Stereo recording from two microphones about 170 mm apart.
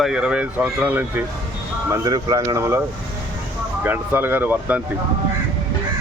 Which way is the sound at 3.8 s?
10° right (ahead or behind).